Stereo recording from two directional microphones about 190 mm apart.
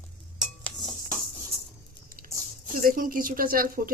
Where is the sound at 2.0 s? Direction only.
50° right (ahead or behind).